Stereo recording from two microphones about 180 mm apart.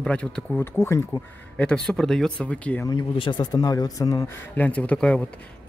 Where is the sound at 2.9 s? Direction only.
25° left (ahead or behind).